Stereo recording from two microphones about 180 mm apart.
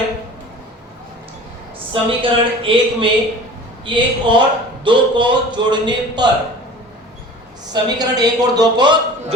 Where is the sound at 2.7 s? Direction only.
30° right (ahead or behind).